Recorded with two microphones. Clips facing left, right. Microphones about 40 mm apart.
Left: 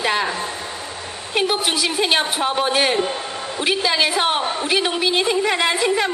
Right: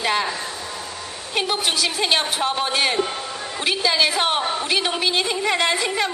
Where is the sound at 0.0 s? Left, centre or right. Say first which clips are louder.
Left 1 dB; centre.